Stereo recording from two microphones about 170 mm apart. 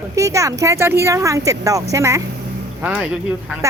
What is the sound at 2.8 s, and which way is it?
Speech, 10° right (ahead or behind).